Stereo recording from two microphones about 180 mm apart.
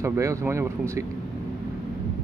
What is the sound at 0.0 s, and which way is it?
A man's voice, 15° right (ahead or behind).